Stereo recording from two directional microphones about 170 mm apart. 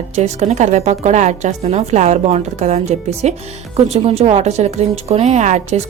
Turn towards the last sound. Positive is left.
turn(degrees=-40)  # may be behind; listen again after turning